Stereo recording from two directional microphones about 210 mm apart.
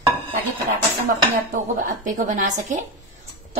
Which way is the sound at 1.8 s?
40° right (ahead or behind).